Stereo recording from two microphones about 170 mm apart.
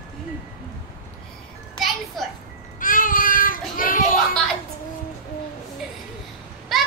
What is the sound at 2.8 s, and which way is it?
Child singing, 55° left (ahead or behind).